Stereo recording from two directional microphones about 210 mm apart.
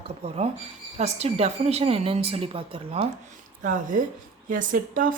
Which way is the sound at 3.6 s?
40° right (ahead or behind).